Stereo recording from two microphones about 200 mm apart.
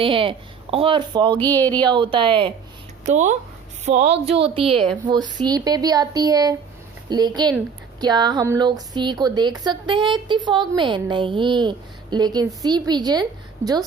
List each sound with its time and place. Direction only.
0.0 s a woman's voice: 25° right (ahead or behind)
1.4 s speech: 10° left (ahead or behind)
1.9 s a woman's voice: 25° right (ahead or behind)
3.1 s a woman's voice: 35° right (ahead or behind); by 13.2 s 20° right (ahead or behind)